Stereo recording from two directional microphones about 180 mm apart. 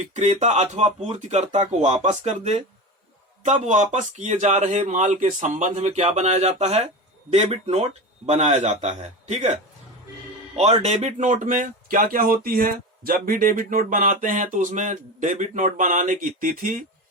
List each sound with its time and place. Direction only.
0.1 s a man's voice: 40° right (ahead or behind)